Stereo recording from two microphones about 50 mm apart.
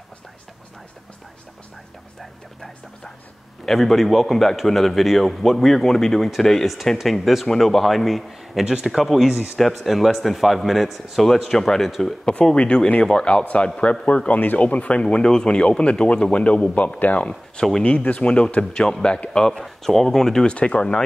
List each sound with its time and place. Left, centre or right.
3.6 s a man's voice: centre
8.6 s speech: centre
8.9 s a man's voice: centre
12.3 s speech: centre
20.5 s speech: left